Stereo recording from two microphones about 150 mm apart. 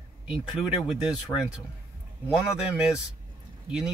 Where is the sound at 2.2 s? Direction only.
5° right (ahead or behind).